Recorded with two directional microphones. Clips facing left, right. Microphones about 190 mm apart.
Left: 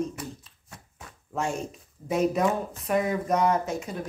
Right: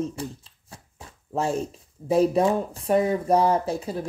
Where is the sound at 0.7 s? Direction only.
30° right (ahead or behind).